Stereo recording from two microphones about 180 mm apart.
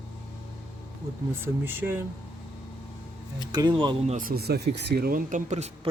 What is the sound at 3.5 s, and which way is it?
Speech, 25° right (ahead or behind).